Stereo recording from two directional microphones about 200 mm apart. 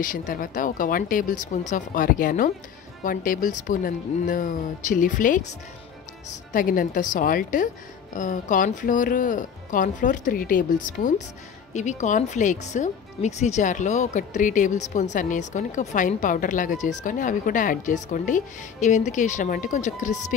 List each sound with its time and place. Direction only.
0.0 s speech: 45° left (ahead or behind)
6.5 s speech: 45° left (ahead or behind)